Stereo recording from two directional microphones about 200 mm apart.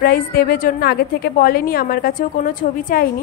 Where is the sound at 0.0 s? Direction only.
50° left (ahead or behind).